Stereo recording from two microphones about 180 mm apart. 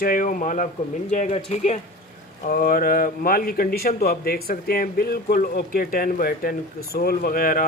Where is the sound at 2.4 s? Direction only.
50° left (ahead or behind).